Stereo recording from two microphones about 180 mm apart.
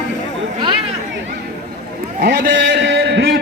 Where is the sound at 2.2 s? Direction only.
80° right.